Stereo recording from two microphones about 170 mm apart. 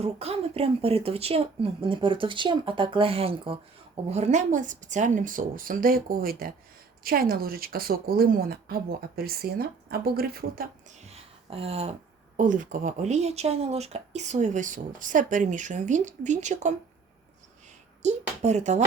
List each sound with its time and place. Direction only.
0.0 s speech: 35° right (ahead or behind)
4.1 s a woman's voice: 40° right (ahead or behind); by 10.7 s 60° right (ahead or behind)
11.0 s a sound: 35° right (ahead or behind)
12.4 s speech: 50° right (ahead or behind)
18.0 s speech: 40° right (ahead or behind)